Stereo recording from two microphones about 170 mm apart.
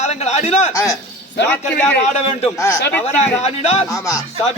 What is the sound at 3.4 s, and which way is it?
Speech, 40° left (ahead or behind).